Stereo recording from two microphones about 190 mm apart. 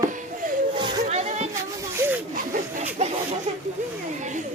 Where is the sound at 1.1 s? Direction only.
35° right (ahead or behind).